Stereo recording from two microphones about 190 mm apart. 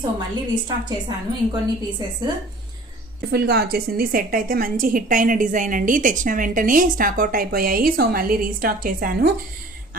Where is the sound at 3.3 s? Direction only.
55° right (ahead or behind).